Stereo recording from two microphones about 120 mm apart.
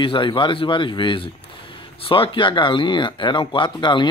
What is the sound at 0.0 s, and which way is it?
Speech, 45° left (ahead or behind).